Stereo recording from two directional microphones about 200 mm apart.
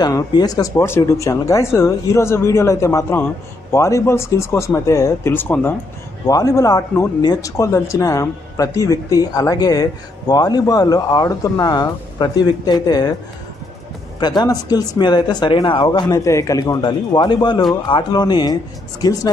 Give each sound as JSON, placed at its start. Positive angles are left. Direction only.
{"t": 0.0, "sound": "speech", "side_deg": 20}
{"t": 14.2, "sound": "speech", "side_deg": 20}